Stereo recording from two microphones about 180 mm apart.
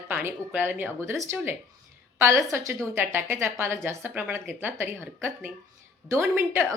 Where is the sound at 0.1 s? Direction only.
10° right (ahead or behind).